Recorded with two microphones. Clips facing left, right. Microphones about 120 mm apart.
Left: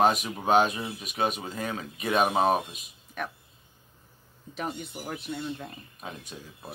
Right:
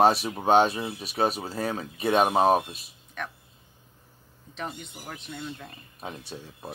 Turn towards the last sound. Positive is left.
turn(degrees=-30)  # may be behind; listen again after turning